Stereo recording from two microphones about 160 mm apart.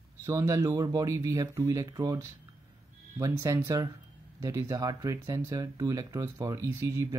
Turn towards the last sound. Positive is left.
turn(degrees=-15)  # may be behind; listen again after turning